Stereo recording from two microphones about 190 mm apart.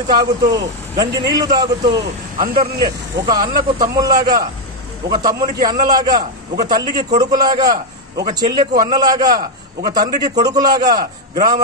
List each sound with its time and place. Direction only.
0.1 s a man's voice: 20° right (ahead or behind)